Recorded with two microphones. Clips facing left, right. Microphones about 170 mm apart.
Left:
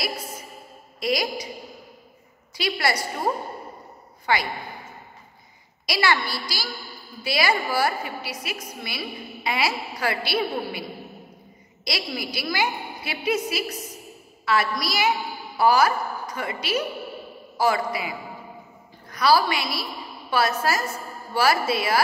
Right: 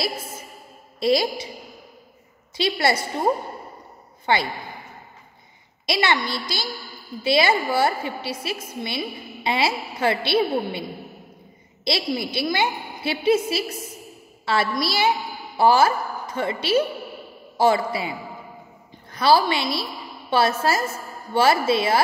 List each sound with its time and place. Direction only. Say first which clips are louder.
0.9 s a woman's voice: right 5 dB; 30° right (ahead or behind)
2.5 s a woman's voice: right 3 dB; 25° right (ahead or behind)
4.3 s a woman's voice: right 2 dB; 25° right (ahead or behind)
5.9 s a woman's voice: right 1 dB; 20° right (ahead or behind)